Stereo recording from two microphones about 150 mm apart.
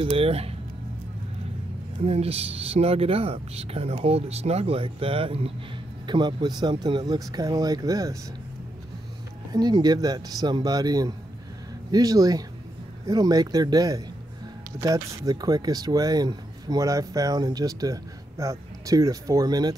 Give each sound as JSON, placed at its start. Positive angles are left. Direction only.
{"t": 0.0, "sound": "speech", "side_deg": -40}
{"t": 2.0, "sound": "speech", "side_deg": -45}
{"t": 9.5, "sound": "speech", "side_deg": -25}